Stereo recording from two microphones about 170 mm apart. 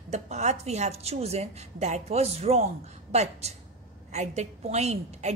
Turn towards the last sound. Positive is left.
turn(degrees=-40)  # may be behind; listen again after turning